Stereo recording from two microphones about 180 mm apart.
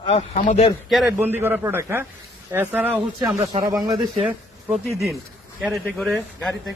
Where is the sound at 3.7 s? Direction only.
20° right (ahead or behind).